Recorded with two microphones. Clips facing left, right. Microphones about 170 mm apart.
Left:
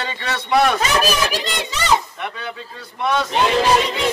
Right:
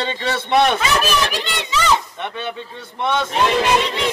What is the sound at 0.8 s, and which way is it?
Speech, 40° left (ahead or behind).